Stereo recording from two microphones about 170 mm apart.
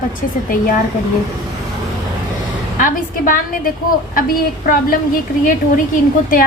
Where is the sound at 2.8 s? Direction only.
55° left (ahead or behind).